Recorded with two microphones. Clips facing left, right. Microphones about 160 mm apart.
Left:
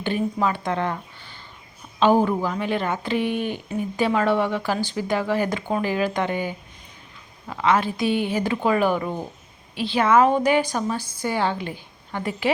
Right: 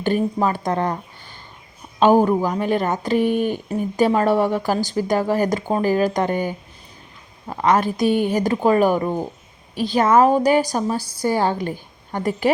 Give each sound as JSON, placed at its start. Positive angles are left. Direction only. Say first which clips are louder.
{"t": 0.0, "sound": "speech", "louder": "right 4 dB", "side_deg": -40}
{"t": 2.0, "sound": "a woman's voice", "louder": "right 4 dB", "side_deg": -45}